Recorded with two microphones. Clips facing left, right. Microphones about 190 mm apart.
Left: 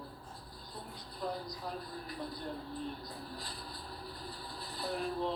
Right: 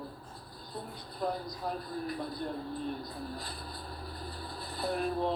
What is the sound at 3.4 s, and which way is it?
Speech, 55° right (ahead or behind).